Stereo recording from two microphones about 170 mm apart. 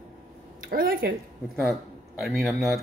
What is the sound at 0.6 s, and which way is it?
Speech, 60° right (ahead or behind).